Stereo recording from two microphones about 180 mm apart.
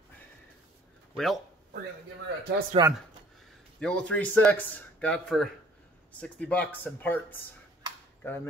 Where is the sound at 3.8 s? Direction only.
5° left (ahead or behind).